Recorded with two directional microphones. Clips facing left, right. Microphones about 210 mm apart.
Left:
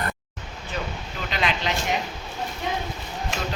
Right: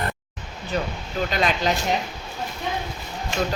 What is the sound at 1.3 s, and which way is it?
Speech, 40° right (ahead or behind).